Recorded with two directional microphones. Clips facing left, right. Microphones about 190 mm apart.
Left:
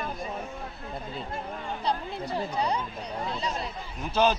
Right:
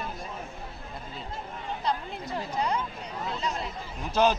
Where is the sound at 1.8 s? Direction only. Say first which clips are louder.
Left 1 dB; 30° left (ahead or behind).